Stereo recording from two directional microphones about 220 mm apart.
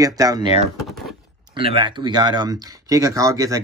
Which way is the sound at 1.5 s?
25° right (ahead or behind).